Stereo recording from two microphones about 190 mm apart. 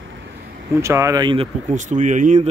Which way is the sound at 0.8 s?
15° right (ahead or behind).